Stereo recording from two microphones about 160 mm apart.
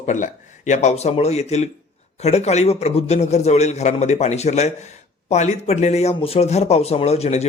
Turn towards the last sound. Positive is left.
turn(degrees=45)  # may be behind; listen again after turning